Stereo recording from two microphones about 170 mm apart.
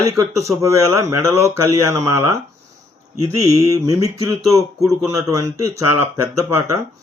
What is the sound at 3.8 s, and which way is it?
Speech, 20° right (ahead or behind).